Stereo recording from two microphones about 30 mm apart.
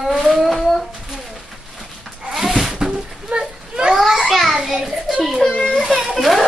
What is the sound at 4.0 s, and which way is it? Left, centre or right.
Children playing, centre.